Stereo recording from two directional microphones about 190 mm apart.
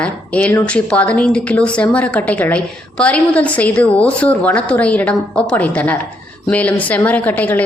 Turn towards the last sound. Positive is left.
turn(degrees=10)  # may be behind; listen again after turning